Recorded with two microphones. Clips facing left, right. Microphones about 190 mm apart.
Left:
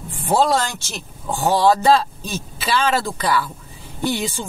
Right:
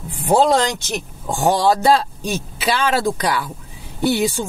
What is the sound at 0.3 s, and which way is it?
Speech, 15° right (ahead or behind).